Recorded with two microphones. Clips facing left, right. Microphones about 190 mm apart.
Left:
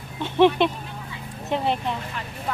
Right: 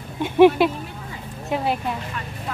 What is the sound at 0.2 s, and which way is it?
Speech, 10° right (ahead or behind).